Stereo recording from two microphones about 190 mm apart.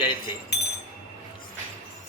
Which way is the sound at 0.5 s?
60° left (ahead or behind).